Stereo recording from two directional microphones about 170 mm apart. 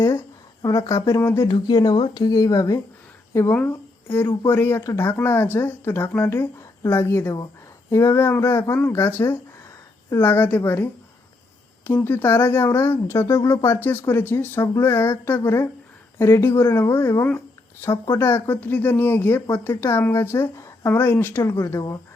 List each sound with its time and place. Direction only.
0.6 s speech: 20° left (ahead or behind)
11.9 s speech: 10° left (ahead or behind)